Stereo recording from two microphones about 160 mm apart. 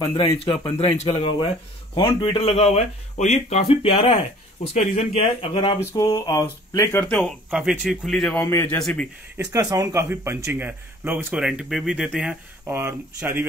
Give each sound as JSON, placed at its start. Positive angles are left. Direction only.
{"t": 0.9, "sound": "speech", "side_deg": 35}
{"t": 5.8, "sound": "speech", "side_deg": 20}
{"t": 7.2, "sound": "speech", "side_deg": 0}
{"t": 8.4, "sound": "a man's voice", "side_deg": 15}
{"t": 9.4, "sound": "speech", "side_deg": -20}